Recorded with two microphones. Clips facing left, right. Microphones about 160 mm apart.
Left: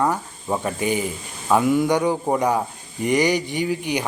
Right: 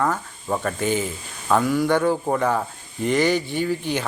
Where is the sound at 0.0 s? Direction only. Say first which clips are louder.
Left 2 dB; 15° left (ahead or behind).